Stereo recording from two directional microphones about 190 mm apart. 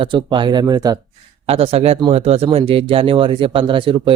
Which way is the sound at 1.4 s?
30° right (ahead or behind).